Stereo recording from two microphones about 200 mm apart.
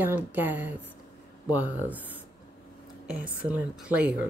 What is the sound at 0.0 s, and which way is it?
Speech, 10° right (ahead or behind).